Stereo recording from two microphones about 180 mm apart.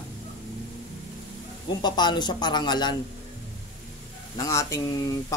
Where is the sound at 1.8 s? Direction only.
25° left (ahead or behind).